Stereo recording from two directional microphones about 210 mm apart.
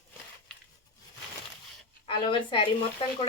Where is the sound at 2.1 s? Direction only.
25° left (ahead or behind).